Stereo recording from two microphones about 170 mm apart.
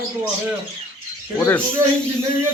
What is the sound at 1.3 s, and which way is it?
Speech, 15° left (ahead or behind).